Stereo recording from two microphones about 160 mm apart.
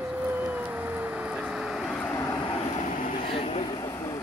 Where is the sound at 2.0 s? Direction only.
15° left (ahead or behind).